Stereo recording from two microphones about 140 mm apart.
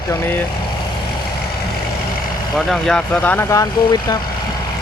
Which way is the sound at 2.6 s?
5° left (ahead or behind).